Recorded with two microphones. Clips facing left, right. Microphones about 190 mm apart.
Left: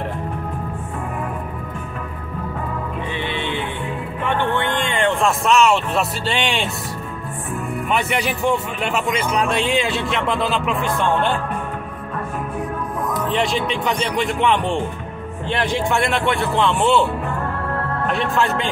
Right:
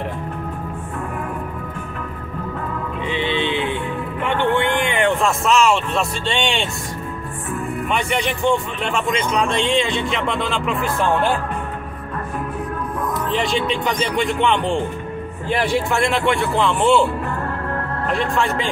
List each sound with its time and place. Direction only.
3.1 s music: 20° right (ahead or behind)
4.6 s a sound: 10° right (ahead or behind)
5.2 s speech: centre (ahead or behind)
7.9 s speech: 5° left (ahead or behind)
13.3 s speech: centre (ahead or behind)